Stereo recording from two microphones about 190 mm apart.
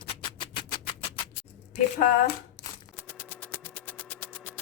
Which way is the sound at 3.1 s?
10° left (ahead or behind).